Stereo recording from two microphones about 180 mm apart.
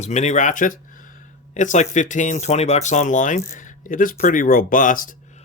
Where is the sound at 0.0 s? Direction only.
40° left (ahead or behind).